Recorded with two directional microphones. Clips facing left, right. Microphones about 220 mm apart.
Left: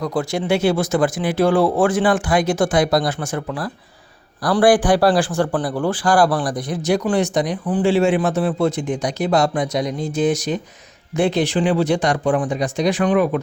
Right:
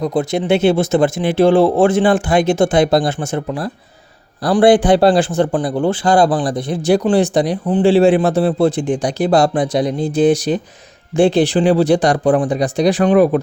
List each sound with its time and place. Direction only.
0.0 s speech: 20° right (ahead or behind)